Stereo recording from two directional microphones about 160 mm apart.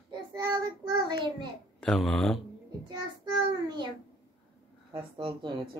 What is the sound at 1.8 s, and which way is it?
Speech, 5° left (ahead or behind).